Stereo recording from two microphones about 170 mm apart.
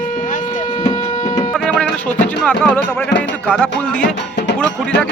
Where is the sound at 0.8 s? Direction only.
35° left (ahead or behind).